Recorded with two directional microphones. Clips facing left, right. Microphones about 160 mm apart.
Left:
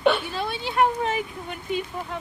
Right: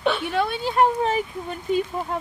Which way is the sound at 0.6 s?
35° right (ahead or behind).